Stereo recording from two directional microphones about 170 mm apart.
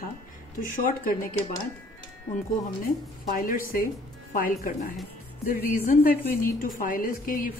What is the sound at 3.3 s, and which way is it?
A woman's voice, 55° left (ahead or behind).